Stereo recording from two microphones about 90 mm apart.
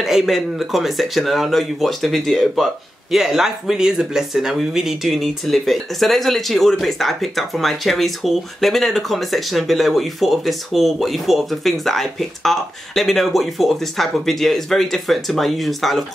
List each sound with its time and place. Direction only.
0.0 s speech: centre (ahead or behind)